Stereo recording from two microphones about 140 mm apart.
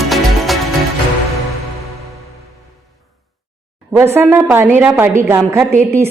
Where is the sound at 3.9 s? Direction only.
15° right (ahead or behind).